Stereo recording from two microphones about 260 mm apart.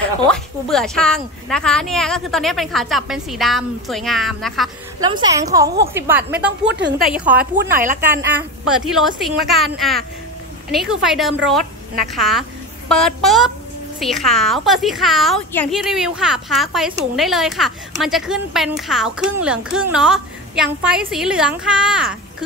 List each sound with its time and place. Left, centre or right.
0.3 s a woman's voice: centre
5.0 s a woman's voice: centre
6.6 s a woman's voice: right
7.0 s a woman's voice: centre
7.7 s speech: right
8.0 s a woman's voice: centre